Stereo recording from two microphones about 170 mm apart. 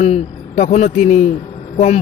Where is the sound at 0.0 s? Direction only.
40° left (ahead or behind).